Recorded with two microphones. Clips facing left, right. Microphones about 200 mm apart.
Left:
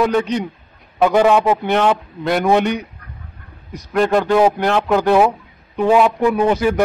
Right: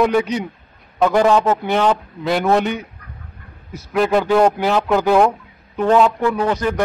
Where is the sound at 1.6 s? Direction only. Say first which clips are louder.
Left 1 dB; centre (ahead or behind); by 6.5 s 20° left (ahead or behind).